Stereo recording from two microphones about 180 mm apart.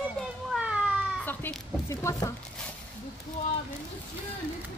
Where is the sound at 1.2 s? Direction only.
15° left (ahead or behind).